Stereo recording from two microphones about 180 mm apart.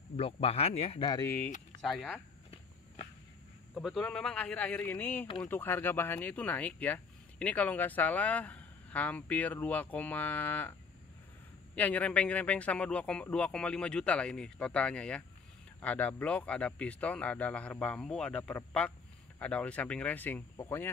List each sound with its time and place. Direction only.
0.1 s speech: 35° left (ahead or behind)
1.2 s speech: 10° left (ahead or behind)
3.7 s speech: centre (ahead or behind)
11.7 s speech: 10° left (ahead or behind)